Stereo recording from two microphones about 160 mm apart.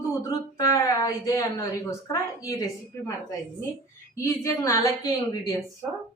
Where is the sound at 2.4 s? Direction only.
20° left (ahead or behind).